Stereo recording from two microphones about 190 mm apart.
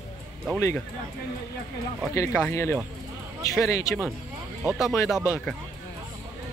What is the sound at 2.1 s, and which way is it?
Speech, 15° left (ahead or behind).